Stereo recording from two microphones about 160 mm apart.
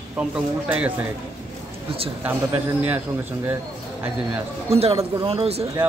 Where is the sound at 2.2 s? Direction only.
10° right (ahead or behind).